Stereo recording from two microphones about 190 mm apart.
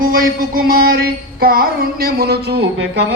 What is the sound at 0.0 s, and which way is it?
Music, 50° right (ahead or behind).